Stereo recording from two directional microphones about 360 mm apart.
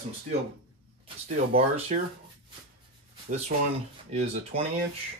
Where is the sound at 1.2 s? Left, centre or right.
Centre.